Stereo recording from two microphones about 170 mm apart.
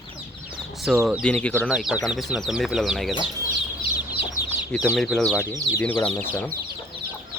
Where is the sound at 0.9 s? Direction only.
15° right (ahead or behind).